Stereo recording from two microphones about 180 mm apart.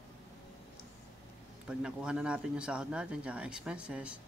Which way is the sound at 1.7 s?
5° right (ahead or behind).